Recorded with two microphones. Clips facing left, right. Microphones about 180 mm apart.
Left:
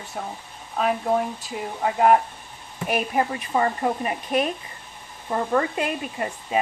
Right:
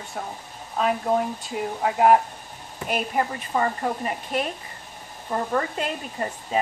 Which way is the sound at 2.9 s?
15° left (ahead or behind).